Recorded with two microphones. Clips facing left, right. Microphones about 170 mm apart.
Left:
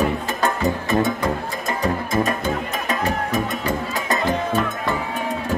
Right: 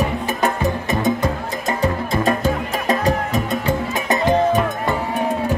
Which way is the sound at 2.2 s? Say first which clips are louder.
Right 4 dB; 35° right (ahead or behind).